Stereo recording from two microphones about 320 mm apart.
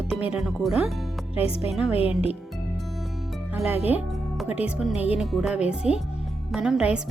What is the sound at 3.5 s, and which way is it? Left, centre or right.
Speech, centre.